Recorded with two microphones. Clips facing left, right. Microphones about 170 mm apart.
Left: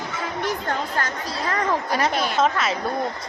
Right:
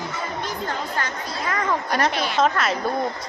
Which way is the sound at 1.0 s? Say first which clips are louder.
Left 1 dB; 45° left (ahead or behind).